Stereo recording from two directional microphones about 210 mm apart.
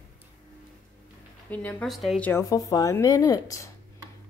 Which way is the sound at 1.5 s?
10° left (ahead or behind).